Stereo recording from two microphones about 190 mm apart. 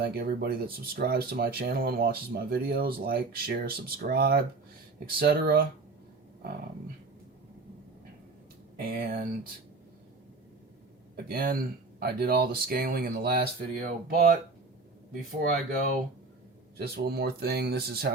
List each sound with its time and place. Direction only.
0.0 s speech: 55° right (ahead or behind)
8.8 s speech: 50° right (ahead or behind)
11.3 s speech: 50° right (ahead or behind)